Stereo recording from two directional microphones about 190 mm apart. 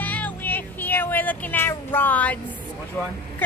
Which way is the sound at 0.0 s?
10° left (ahead or behind).